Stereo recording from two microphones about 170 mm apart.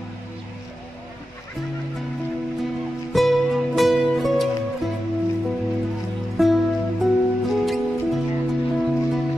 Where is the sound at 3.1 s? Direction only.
Centre (ahead or behind).